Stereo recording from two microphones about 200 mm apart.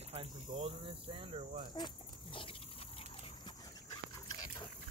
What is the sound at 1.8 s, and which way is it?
Dog, 25° left (ahead or behind).